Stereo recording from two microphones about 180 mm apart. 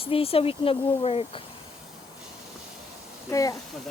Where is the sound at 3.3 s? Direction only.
20° left (ahead or behind).